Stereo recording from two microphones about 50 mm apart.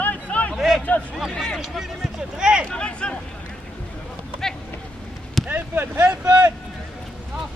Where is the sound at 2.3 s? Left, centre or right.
Centre.